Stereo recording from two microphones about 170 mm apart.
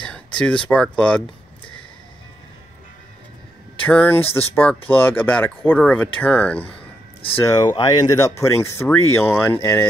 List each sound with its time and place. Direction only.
0.4 s speech: 5° left (ahead or behind)
3.8 s speech: 10° left (ahead or behind)
7.4 s speech: 25° left (ahead or behind)